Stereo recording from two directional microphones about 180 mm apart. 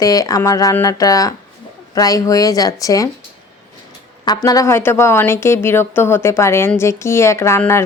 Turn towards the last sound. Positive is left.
turn(degrees=15)  # may be behind; listen again after turning